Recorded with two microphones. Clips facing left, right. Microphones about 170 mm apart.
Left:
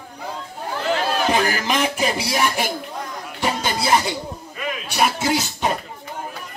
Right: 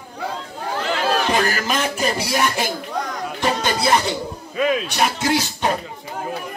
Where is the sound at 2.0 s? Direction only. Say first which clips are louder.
Right 1 dB; 5° left (ahead or behind).